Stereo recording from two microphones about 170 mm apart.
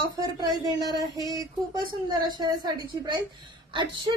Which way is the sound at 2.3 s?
25° right (ahead or behind).